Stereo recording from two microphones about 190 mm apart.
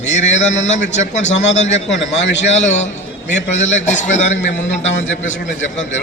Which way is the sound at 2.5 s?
35° left (ahead or behind).